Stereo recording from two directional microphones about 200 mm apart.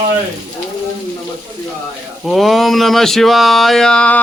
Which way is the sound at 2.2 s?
Centre (ahead or behind).